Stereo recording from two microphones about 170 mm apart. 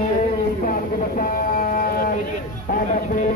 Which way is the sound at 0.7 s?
55° left (ahead or behind).